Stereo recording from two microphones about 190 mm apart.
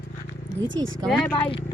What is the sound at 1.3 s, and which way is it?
Speech, 25° left (ahead or behind).